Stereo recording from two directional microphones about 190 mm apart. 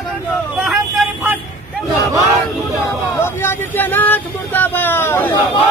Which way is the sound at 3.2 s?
10° left (ahead or behind).